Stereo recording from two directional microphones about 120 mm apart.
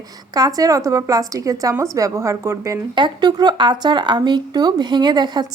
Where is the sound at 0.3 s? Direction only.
30° right (ahead or behind).